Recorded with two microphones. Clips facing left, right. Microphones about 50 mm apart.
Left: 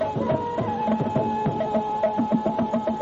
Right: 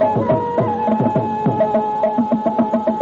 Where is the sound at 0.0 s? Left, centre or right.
Right.